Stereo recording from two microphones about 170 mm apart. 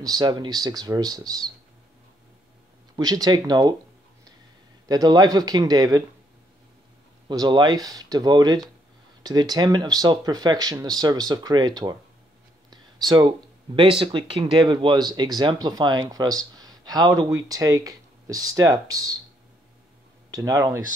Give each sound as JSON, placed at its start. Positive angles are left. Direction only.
{"t": 0.0, "sound": "speech", "side_deg": -25}
{"t": 3.0, "sound": "speech", "side_deg": -25}
{"t": 4.8, "sound": "speech", "side_deg": -20}
{"t": 7.2, "sound": "speech", "side_deg": -25}
{"t": 13.7, "sound": "speech", "side_deg": -30}
{"t": 20.2, "sound": "speech", "side_deg": -20}